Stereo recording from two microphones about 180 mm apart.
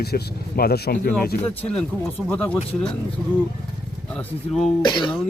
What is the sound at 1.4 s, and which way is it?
Speech, 5° left (ahead or behind).